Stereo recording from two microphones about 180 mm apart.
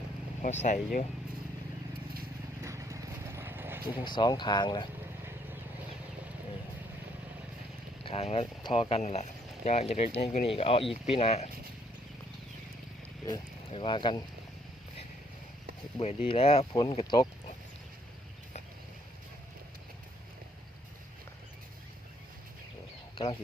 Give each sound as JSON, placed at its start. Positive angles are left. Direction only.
{"t": 0.6, "sound": "speech", "side_deg": 45}
{"t": 2.6, "sound": "clip-clop", "side_deg": -15}
{"t": 4.0, "sound": "speech", "side_deg": 25}
{"t": 5.2, "sound": "a sound", "side_deg": -15}
{"t": 8.0, "sound": "speech", "side_deg": 35}
{"t": 13.7, "sound": "speech", "side_deg": 30}
{"t": 16.0, "sound": "speech", "side_deg": 30}
{"t": 23.1, "sound": "speech", "side_deg": 30}